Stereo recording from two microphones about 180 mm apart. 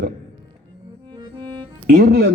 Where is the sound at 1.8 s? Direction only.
55° right (ahead or behind).